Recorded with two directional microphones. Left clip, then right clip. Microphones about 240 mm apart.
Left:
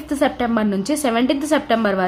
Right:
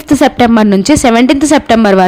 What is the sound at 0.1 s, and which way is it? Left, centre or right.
A woman's voice, right.